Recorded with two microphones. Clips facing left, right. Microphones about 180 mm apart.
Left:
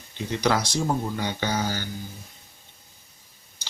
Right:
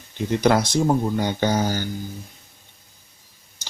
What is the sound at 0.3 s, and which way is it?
Speech, 50° right (ahead or behind).